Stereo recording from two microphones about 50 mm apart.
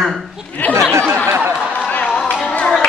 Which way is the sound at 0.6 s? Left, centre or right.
Left.